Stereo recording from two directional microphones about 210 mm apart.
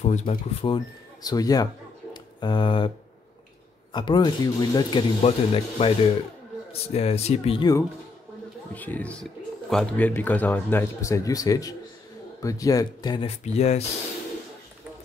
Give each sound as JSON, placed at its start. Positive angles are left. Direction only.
{"t": 0.0, "sound": "speech", "side_deg": 35}
{"t": 3.9, "sound": "speech", "side_deg": 20}
{"t": 8.7, "sound": "speech", "side_deg": 10}
{"t": 13.4, "sound": "speech", "side_deg": 30}